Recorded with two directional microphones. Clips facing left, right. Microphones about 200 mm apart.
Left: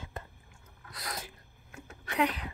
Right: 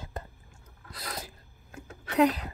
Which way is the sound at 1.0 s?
30° right (ahead or behind).